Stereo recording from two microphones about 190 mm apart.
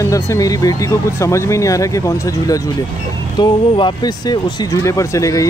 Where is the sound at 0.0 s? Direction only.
15° left (ahead or behind).